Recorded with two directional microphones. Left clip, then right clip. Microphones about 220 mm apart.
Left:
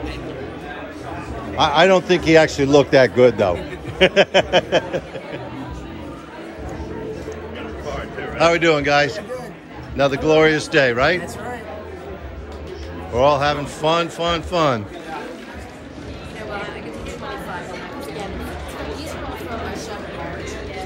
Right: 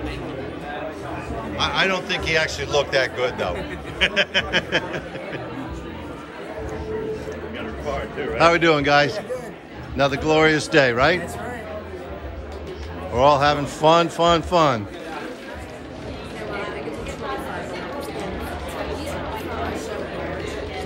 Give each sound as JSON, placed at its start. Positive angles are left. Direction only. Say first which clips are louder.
{"t": 1.6, "sound": "a man's voice", "louder": "left 8 dB", "side_deg": 5}
{"t": 8.4, "sound": "a man's voice", "louder": "left 1 dB", "side_deg": -5}
{"t": 13.1, "sound": "speech", "louder": "even", "side_deg": -5}